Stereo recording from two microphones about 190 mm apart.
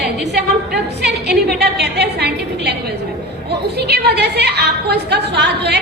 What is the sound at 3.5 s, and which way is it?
A woman's voice, 60° right (ahead or behind).